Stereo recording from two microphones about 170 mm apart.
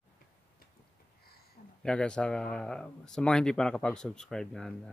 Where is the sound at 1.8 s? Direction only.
5° left (ahead or behind).